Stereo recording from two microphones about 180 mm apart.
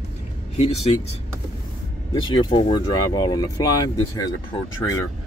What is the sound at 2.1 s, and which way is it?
Speech, 20° left (ahead or behind).